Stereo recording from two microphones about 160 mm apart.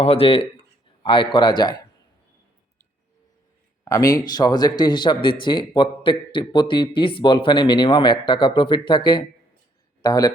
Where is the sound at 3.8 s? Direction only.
20° left (ahead or behind).